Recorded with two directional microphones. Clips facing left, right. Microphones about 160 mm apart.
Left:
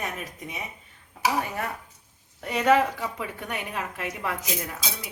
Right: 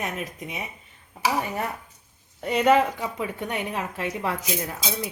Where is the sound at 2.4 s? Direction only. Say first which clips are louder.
Right 2 dB; 20° right (ahead or behind).